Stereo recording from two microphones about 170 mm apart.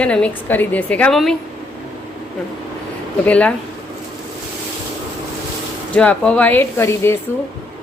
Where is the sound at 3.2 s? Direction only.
5° left (ahead or behind).